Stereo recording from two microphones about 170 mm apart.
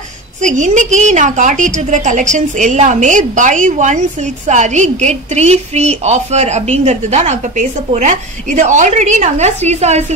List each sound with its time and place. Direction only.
0.4 s a woman's voice: 45° right (ahead or behind)